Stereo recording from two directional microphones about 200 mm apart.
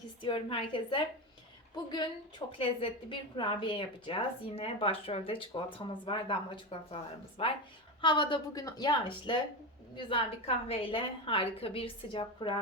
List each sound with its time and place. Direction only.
0.2 s a woman's voice: 25° left (ahead or behind)